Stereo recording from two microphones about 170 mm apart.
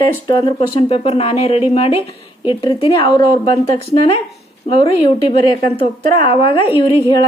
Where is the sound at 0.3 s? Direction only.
30° left (ahead or behind).